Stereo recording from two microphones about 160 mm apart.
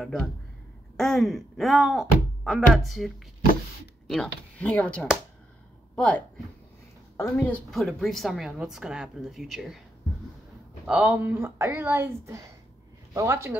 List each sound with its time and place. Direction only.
0.9 s a woman's voice: centre (ahead or behind)
4.1 s a woman's voice: 5° left (ahead or behind)
10.9 s speech: 10° right (ahead or behind)